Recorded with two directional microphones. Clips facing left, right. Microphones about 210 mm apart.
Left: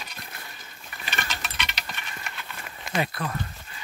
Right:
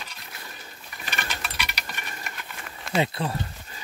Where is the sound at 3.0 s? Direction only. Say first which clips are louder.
Right 3 dB; 25° right (ahead or behind).